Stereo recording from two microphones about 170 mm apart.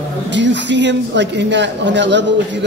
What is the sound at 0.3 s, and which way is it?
Speech, 90° right.